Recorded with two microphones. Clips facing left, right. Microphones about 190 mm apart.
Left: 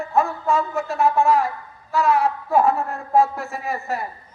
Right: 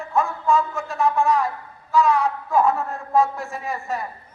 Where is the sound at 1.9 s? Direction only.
60° left (ahead or behind).